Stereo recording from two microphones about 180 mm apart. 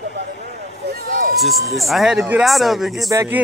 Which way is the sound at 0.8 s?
50° right (ahead or behind).